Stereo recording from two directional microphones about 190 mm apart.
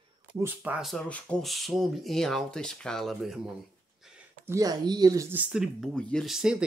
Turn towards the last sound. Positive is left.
turn(degrees=-5)  # may be behind; listen again after turning